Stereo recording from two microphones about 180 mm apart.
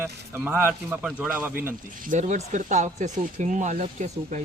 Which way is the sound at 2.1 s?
40° right (ahead or behind).